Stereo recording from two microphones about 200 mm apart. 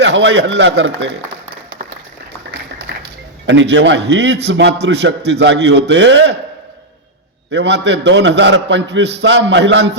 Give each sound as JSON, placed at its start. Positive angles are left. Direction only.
{"t": 0.0, "sound": "a man's voice", "side_deg": -65}
{"t": 2.9, "sound": "music", "side_deg": -60}
{"t": 3.4, "sound": "a man's voice", "side_deg": -65}
{"t": 7.5, "sound": "a man's voice", "side_deg": -60}